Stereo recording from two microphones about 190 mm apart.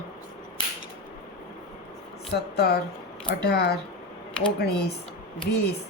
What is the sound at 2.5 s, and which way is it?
A woman's voice, 60° left (ahead or behind).